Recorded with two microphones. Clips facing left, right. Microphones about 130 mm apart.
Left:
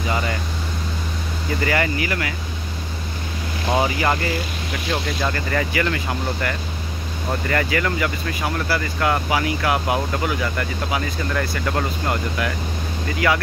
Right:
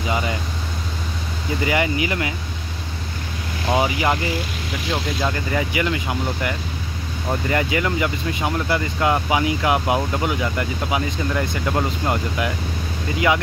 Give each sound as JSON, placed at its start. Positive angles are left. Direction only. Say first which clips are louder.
{"t": 1.6, "sound": "speech", "louder": "right 1 dB", "side_deg": -15}
{"t": 3.6, "sound": "speech", "louder": "even", "side_deg": -10}
{"t": 5.2, "sound": "speech", "louder": "even", "side_deg": -10}